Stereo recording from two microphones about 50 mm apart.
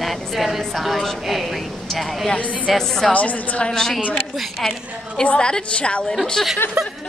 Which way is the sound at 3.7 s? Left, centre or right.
Centre.